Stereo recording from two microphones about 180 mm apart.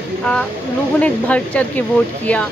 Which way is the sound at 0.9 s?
5° left (ahead or behind).